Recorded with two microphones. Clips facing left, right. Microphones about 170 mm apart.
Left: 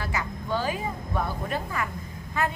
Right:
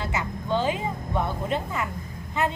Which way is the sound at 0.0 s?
20° right (ahead or behind).